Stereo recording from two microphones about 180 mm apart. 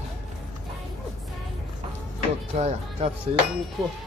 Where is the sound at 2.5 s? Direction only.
35° right (ahead or behind).